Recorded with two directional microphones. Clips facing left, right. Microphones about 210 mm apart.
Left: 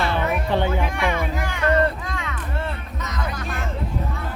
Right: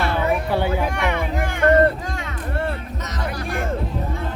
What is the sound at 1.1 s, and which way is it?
Music, 55° right (ahead or behind).